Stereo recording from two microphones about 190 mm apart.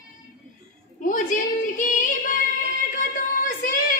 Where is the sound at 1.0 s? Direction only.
45° left (ahead or behind).